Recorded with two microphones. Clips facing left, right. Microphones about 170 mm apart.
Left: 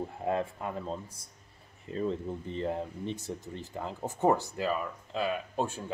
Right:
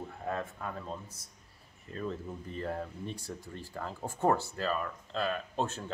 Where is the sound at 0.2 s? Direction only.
25° left (ahead or behind).